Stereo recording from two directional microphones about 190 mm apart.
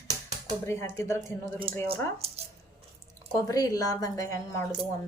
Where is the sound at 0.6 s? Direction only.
15° left (ahead or behind).